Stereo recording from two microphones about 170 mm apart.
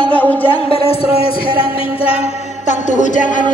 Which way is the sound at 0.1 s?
10° left (ahead or behind).